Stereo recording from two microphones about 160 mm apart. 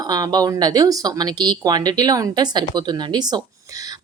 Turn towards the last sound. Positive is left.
turn(degrees=-25)  # may be behind; listen again after turning